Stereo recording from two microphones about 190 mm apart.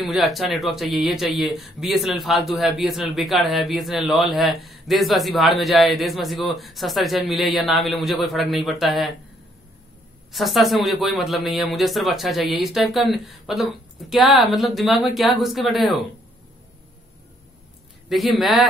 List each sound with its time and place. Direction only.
0.0 s speech: centre (ahead or behind)
10.3 s speech: centre (ahead or behind)
18.0 s speech: centre (ahead or behind)